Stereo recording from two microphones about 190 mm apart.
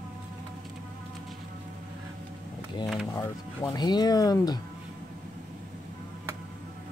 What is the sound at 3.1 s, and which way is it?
Speech, 20° left (ahead or behind).